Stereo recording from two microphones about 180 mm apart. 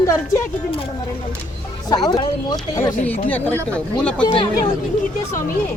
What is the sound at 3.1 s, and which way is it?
Speech, 10° left (ahead or behind).